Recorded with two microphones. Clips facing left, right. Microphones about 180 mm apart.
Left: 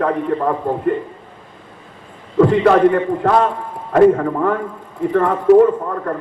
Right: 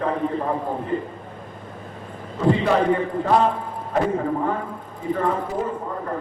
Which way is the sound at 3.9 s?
70° left (ahead or behind).